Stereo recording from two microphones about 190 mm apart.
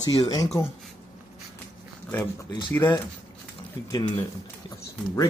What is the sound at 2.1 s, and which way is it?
Speech, 10° left (ahead or behind).